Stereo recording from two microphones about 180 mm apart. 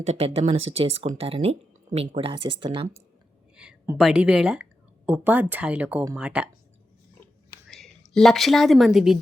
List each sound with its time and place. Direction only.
0.0 s speech: 35° right (ahead or behind)
3.5 s a sound: 5° right (ahead or behind)
3.9 s a woman's voice: 5° right (ahead or behind)
7.7 s a woman's voice: centre (ahead or behind)